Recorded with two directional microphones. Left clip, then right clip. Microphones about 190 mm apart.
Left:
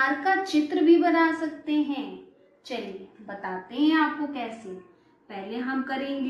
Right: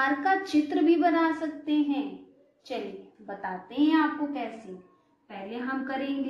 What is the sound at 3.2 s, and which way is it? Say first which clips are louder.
A woman's voice: left 1 dB; 30° right (ahead or behind).